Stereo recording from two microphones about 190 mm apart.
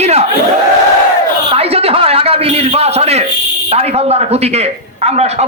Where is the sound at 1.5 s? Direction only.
30° right (ahead or behind).